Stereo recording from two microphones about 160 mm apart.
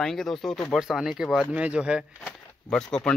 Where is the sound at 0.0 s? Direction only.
5° left (ahead or behind).